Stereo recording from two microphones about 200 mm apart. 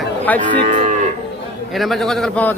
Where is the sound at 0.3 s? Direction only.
35° right (ahead or behind).